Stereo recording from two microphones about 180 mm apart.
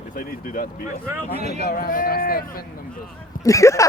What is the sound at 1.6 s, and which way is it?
Speech, 55° left (ahead or behind).